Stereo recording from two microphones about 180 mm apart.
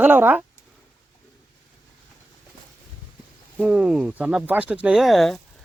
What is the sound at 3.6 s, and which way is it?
Speech, 5° right (ahead or behind).